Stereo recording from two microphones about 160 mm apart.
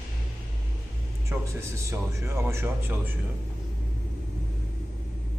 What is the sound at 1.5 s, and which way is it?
Speech, 15° right (ahead or behind).